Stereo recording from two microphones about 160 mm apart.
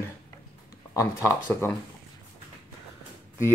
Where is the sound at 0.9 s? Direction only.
20° left (ahead or behind).